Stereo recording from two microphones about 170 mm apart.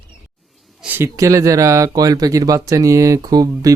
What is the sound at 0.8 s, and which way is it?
Speech, 10° right (ahead or behind).